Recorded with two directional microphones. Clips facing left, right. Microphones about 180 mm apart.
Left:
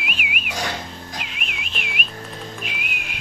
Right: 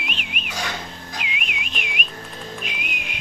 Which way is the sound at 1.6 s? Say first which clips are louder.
Even; 45° right (ahead or behind).